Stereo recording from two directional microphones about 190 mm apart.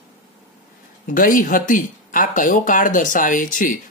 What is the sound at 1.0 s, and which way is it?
Speech, 45° left (ahead or behind).